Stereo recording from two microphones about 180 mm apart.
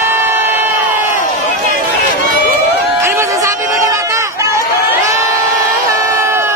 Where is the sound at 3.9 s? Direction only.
15° right (ahead or behind).